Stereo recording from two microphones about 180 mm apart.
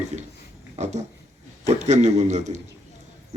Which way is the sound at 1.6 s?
40° right (ahead or behind).